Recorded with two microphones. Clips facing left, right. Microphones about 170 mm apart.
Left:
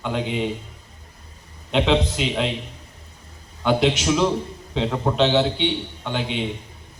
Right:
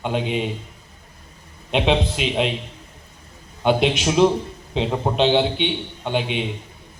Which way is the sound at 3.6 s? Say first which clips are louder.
Even; 20° right (ahead or behind).